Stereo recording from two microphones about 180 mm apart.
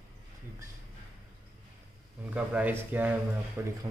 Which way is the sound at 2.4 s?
10° right (ahead or behind).